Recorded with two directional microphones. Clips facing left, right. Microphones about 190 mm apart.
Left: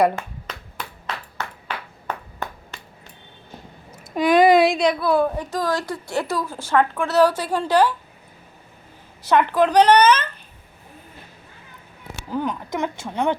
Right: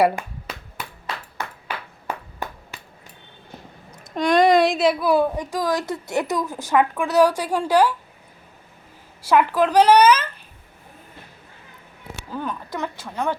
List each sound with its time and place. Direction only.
0.0 s ping: 10° right (ahead or behind)
4.1 s a woman's voice: 5° left (ahead or behind)
9.3 s a child's voice: 5° right (ahead or behind)
12.3 s a woman's voice: 15° left (ahead or behind)